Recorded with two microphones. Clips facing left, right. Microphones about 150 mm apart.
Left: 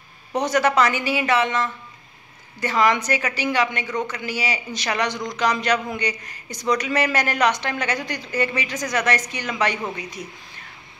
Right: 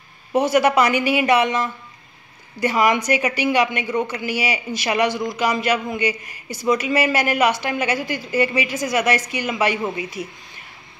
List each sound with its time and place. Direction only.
0.3 s a man's voice: 10° right (ahead or behind)